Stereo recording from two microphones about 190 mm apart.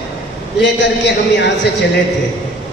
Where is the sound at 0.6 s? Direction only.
65° left (ahead or behind).